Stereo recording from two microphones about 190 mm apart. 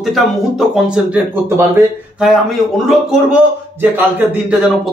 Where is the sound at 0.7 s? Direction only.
5° right (ahead or behind).